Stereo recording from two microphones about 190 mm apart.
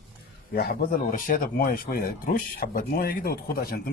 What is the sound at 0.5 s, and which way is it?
A man's voice, 50° left (ahead or behind).